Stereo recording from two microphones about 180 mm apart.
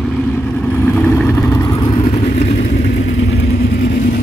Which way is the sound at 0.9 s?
5° left (ahead or behind).